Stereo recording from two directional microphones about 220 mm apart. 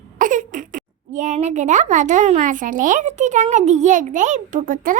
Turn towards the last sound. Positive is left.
turn(degrees=-40)  # may be behind; listen again after turning